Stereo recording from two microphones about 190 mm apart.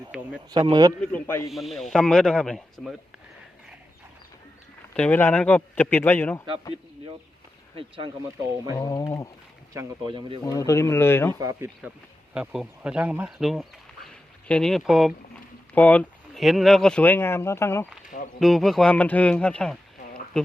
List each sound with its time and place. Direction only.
0.1 s speech: centre (ahead or behind)
0.7 s speech: 20° right (ahead or behind)
1.0 s speech: 10° left (ahead or behind)
4.9 s speech: 10° left (ahead or behind)
7.8 s speech: 25° right (ahead or behind)
8.8 s speech: 20° left (ahead or behind)
9.7 s speech: 25° right (ahead or behind)
10.4 s speech: 15° left (ahead or behind)
11.3 s speech: 15° right (ahead or behind)
12.3 s speech: 5° right (ahead or behind); by 17.8 s 15° left (ahead or behind)
18.3 s speech: centre (ahead or behind)